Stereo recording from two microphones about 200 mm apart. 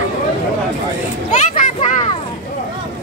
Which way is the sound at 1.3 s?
40° left (ahead or behind).